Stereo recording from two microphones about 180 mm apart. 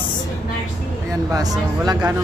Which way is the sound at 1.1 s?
20° right (ahead or behind).